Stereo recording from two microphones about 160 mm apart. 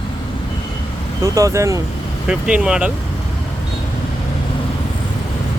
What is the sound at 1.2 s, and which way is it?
Speech, 20° right (ahead or behind).